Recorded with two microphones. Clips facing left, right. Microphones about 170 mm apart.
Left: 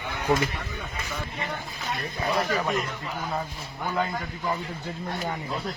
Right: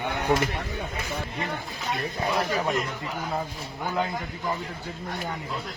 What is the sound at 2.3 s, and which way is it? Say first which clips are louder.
Speech: even; 10° right (ahead or behind).